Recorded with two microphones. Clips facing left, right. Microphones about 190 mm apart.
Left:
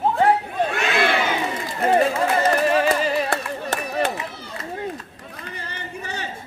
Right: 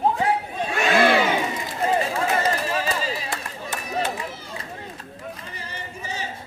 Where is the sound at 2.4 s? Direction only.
65° left (ahead or behind).